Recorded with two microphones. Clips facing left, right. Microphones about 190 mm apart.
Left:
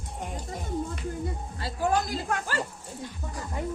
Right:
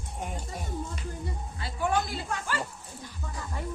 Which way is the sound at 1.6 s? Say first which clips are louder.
Left 2 dB; 40° left (ahead or behind).